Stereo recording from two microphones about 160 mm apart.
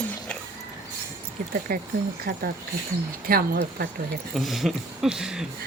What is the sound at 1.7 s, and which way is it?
Speech, 65° right (ahead or behind).